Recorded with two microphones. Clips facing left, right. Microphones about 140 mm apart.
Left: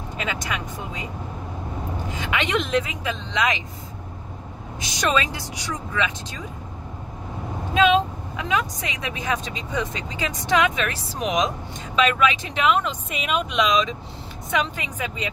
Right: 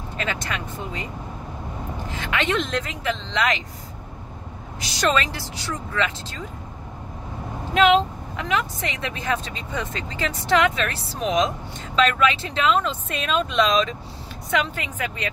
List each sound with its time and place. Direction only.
0.2 s speech: 10° left (ahead or behind)
2.0 s speech: 15° left (ahead or behind)
4.7 s speech: 20° left (ahead or behind)
8.4 s speech: 15° left (ahead or behind)